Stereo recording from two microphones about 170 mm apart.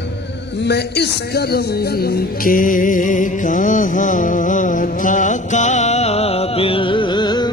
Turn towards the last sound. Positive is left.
turn(degrees=25)  # may be behind; listen again after turning